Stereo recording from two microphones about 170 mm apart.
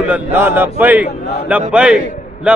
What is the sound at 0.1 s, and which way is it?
A man's voice, 10° right (ahead or behind).